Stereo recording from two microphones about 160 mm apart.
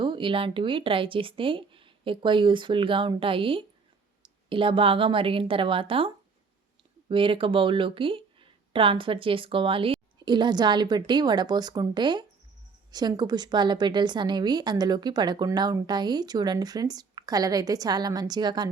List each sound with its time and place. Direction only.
0.0 s speech: 30° right (ahead or behind)
7.1 s a woman's voice: 35° right (ahead or behind)